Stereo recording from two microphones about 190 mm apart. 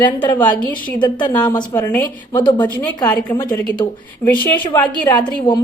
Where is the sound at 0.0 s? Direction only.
25° left (ahead or behind).